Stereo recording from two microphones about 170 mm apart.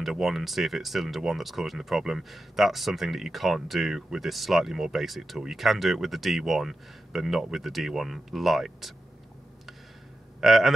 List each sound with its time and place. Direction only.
0.0 s speech: centre (ahead or behind)
10.4 s speech: centre (ahead or behind)